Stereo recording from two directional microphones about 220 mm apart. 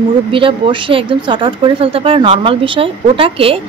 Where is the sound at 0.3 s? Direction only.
25° right (ahead or behind).